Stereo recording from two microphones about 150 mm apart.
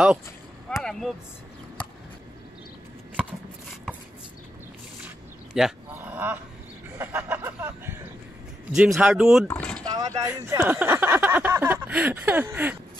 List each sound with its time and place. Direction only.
0.7 s vehicle: 10° left (ahead or behind)
5.5 s dog: 10° right (ahead or behind)
7.0 s a sound: 15° right (ahead or behind)
8.7 s speech: 5° right (ahead or behind)
9.5 s speech: 10° left (ahead or behind)
9.8 s speech: 25° right (ahead or behind)
10.6 s a sound: 10° right (ahead or behind)